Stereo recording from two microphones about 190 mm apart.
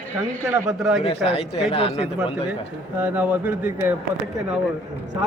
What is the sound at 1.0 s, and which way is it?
Speech, 35° left (ahead or behind).